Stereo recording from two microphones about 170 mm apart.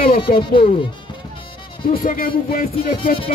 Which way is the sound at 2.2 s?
60° left (ahead or behind).